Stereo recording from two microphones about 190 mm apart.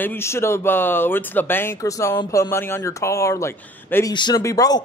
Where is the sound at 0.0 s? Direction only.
10° left (ahead or behind).